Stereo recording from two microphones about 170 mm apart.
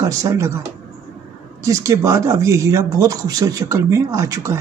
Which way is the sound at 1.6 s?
20° right (ahead or behind).